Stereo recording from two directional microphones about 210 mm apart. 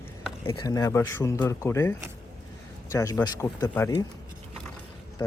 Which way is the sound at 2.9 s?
15° left (ahead or behind).